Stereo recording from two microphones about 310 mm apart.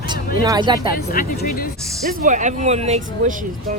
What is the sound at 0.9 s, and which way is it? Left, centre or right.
Speech, left.